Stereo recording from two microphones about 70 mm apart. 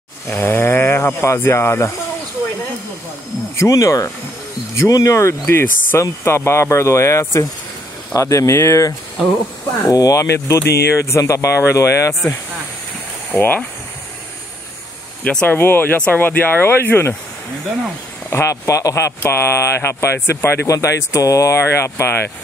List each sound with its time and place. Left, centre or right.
0.3 s speech: left
3.5 s speech: left
5.5 s speech: left
9.8 s speech: left
10.1 s speech: left
13.3 s speech: left
15.2 s speech: centre
15.5 s speech: left
18.3 s speech: left
20.6 s speech: left